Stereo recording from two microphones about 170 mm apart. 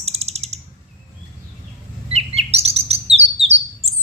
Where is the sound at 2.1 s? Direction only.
35° right (ahead or behind).